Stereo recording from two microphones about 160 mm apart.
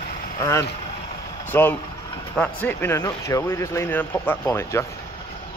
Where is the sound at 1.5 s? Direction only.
15° left (ahead or behind).